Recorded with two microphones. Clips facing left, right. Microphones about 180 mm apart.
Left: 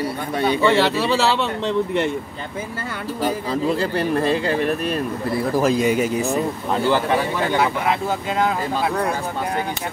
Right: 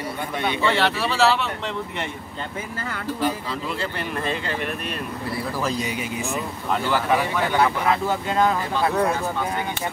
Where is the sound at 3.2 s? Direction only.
40° left (ahead or behind).